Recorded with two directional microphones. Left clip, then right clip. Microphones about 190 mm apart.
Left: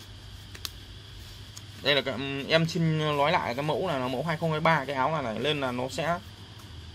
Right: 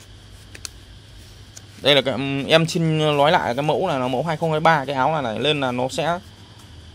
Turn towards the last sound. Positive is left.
turn(degrees=-45)  # may be behind; listen again after turning